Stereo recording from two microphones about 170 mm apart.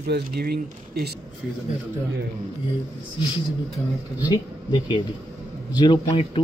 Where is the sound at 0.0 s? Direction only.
65° right (ahead or behind).